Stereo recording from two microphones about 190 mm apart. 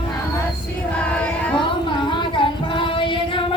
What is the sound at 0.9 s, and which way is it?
Child singing, 5° left (ahead or behind).